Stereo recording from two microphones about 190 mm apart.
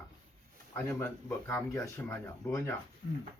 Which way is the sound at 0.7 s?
10° left (ahead or behind).